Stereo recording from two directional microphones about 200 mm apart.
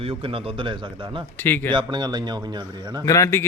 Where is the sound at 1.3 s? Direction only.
10° left (ahead or behind).